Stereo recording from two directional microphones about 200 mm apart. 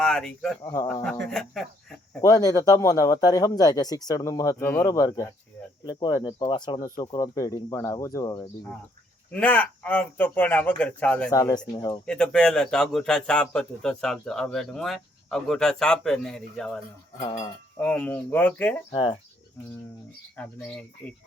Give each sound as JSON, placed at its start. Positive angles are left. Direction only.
{"t": 0.0, "sound": "speech", "side_deg": 0}
{"t": 0.6, "sound": "speech", "side_deg": 15}
{"t": 1.3, "sound": "a man's voice", "side_deg": 0}
{"t": 2.2, "sound": "speech", "side_deg": 15}
{"t": 9.3, "sound": "speech", "side_deg": 10}
{"t": 11.3, "sound": "speech", "side_deg": 15}
{"t": 12.0, "sound": "a man's voice", "side_deg": 5}
{"t": 17.2, "sound": "speech", "side_deg": 20}
{"t": 17.7, "sound": "speech", "side_deg": 10}
{"t": 18.9, "sound": "speech", "side_deg": 25}
{"t": 20.3, "sound": "speech", "side_deg": 5}